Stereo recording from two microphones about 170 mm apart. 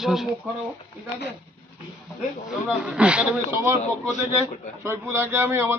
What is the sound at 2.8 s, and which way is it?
A man's voice, 5° right (ahead or behind).